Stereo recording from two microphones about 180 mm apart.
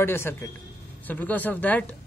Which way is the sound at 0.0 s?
15° left (ahead or behind).